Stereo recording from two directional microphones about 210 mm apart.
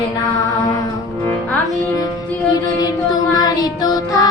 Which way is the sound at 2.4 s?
20° left (ahead or behind).